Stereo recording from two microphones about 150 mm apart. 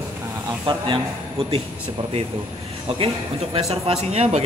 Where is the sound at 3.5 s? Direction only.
45° right (ahead or behind).